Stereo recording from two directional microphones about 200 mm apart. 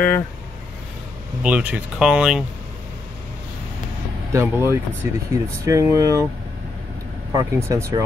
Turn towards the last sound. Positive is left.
turn(degrees=-15)  # may be behind; listen again after turning